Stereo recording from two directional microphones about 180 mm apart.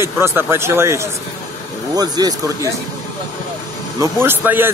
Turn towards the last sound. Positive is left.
turn(degrees=-10)  # may be behind; listen again after turning